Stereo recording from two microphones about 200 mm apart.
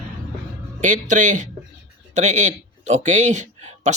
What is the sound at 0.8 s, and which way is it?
Speech, 40° right (ahead or behind).